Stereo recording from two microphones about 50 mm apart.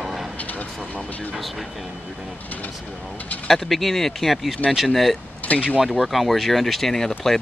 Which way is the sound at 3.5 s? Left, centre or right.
Centre.